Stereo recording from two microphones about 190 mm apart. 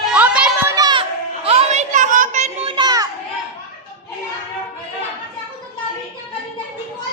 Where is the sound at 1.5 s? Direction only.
35° right (ahead or behind).